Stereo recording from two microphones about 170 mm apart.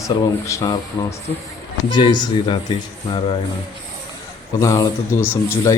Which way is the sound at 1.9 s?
25° left (ahead or behind).